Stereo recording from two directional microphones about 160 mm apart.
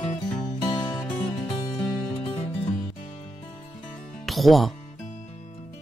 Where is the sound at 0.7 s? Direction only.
25° left (ahead or behind).